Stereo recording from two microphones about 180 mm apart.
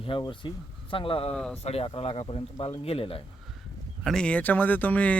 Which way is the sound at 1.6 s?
35° left (ahead or behind).